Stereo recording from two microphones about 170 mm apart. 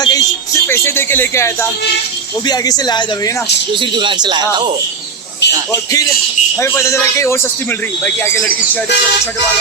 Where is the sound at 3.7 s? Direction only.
30° right (ahead or behind).